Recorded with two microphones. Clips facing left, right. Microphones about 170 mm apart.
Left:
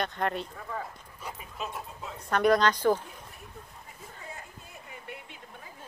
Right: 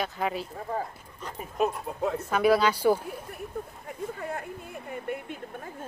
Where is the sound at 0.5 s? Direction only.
35° right (ahead or behind).